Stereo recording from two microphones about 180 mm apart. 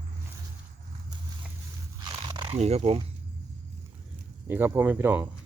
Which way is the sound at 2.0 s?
25° right (ahead or behind).